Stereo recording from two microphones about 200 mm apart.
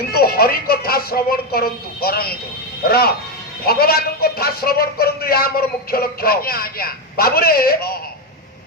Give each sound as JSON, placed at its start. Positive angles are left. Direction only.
{"t": 0.1, "sound": "a man's voice", "side_deg": 50}